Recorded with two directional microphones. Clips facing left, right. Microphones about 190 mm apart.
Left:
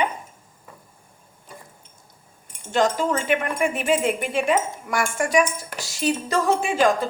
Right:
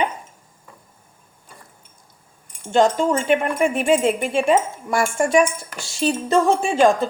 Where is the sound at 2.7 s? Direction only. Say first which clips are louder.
Right 4 dB; 25° right (ahead or behind).